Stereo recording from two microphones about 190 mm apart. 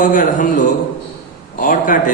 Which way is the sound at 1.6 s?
45° left (ahead or behind).